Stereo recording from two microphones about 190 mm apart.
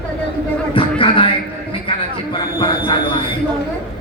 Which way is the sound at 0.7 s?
25° left (ahead or behind).